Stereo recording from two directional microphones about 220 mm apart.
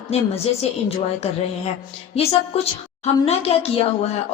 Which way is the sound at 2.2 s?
25° left (ahead or behind).